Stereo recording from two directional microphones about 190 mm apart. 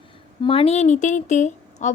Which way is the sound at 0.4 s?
30° left (ahead or behind).